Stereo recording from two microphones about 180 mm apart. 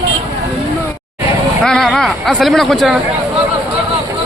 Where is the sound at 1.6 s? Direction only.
Centre (ahead or behind).